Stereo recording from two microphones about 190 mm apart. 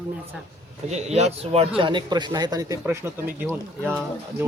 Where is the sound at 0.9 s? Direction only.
35° right (ahead or behind).